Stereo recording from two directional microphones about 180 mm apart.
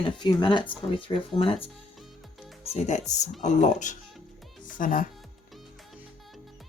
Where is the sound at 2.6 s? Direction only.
40° left (ahead or behind).